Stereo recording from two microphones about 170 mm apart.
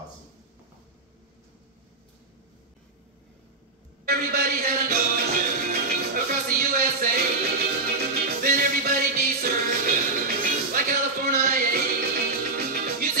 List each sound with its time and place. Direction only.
4.0 s music: 60° right (ahead or behind)